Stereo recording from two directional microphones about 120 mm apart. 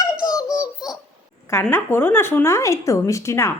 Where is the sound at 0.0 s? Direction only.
30° left (ahead or behind).